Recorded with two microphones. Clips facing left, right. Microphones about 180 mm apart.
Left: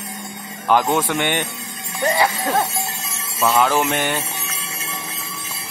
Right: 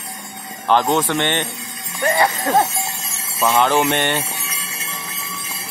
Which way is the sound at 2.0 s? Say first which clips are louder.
Right 1 dB; 10° left (ahead or behind).